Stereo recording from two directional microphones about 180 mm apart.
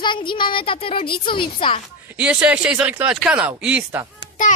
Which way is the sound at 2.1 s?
5° right (ahead or behind).